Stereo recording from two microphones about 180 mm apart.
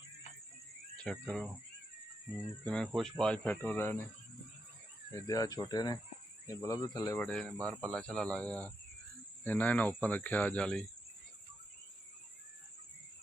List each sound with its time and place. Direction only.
0.9 s speech: centre (ahead or behind)
2.6 s speech: 5° left (ahead or behind)
5.1 s speech: 20° left (ahead or behind)
7.2 s speech: 5° left (ahead or behind)